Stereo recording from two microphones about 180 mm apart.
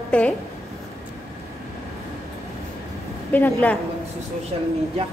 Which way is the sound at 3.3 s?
10° left (ahead or behind).